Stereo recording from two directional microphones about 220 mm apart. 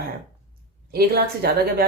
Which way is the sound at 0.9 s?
45° right (ahead or behind).